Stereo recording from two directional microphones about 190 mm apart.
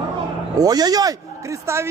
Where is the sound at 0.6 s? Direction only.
20° right (ahead or behind).